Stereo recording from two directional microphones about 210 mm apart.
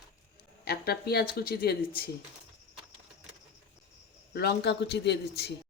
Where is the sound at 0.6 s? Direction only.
50° left (ahead or behind).